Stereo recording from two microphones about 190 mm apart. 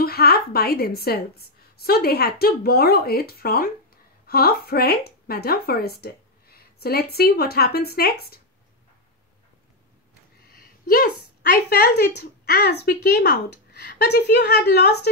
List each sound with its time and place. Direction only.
0.0 s a woman's voice: 55° left (ahead or behind)
10.9 s speech: 50° left (ahead or behind)